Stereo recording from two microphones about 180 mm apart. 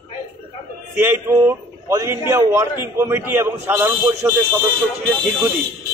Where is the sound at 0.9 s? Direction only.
10° right (ahead or behind).